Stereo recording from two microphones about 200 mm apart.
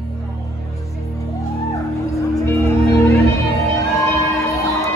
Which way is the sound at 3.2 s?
15° left (ahead or behind).